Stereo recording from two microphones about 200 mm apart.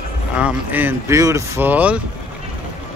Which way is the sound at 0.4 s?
10° right (ahead or behind).